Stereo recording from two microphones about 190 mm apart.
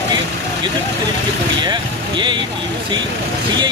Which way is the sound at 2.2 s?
25° right (ahead or behind).